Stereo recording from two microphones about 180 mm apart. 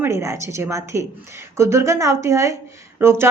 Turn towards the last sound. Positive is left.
turn(degrees=-15)  # may be behind; listen again after turning